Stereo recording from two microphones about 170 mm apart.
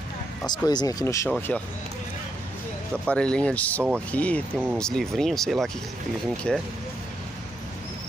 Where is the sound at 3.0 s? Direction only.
5° left (ahead or behind).